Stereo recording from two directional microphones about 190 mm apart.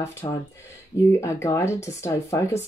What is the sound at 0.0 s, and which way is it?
Speech, 15° left (ahead or behind).